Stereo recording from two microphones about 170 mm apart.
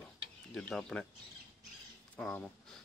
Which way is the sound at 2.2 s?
5° left (ahead or behind).